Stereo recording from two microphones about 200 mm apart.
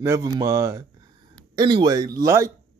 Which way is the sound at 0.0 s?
15° right (ahead or behind).